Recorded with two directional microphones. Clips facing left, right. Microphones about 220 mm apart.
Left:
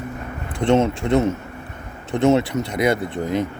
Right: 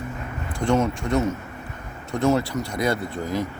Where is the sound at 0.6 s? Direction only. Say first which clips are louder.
Left 4 dB; 20° left (ahead or behind).